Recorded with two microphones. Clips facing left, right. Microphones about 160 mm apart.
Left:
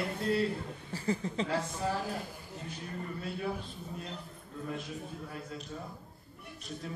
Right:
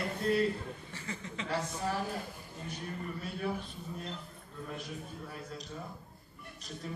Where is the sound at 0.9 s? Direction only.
35° left (ahead or behind).